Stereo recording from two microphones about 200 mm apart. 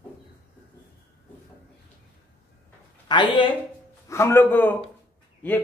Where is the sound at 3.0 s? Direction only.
25° left (ahead or behind).